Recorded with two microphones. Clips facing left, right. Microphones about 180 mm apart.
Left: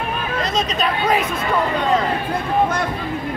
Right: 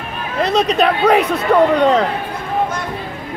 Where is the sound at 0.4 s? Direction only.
65° right (ahead or behind).